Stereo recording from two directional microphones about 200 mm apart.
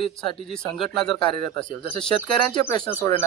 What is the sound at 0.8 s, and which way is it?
Speech, 5° left (ahead or behind).